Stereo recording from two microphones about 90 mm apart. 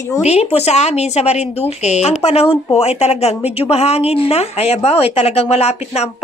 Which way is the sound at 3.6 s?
90° left.